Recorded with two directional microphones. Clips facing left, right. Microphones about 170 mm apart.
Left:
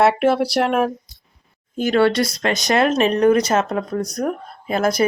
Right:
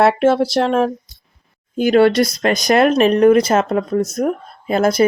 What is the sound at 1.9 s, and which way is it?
Speech, 40° right (ahead or behind).